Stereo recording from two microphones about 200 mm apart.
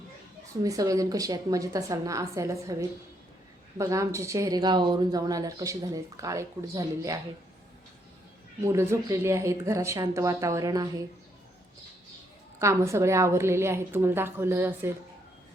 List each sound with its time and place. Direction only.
0.6 s speech: 15° right (ahead or behind)
8.6 s speech: 15° right (ahead or behind)
12.5 s speech: 15° right (ahead or behind)